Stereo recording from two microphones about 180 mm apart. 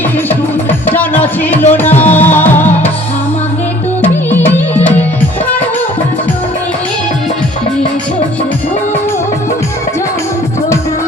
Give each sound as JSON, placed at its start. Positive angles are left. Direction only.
{"t": 0.3, "sound": "music", "side_deg": 10}
{"t": 4.0, "sound": "music", "side_deg": 10}